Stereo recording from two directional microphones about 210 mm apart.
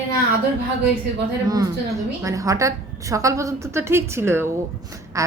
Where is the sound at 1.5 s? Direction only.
15° right (ahead or behind).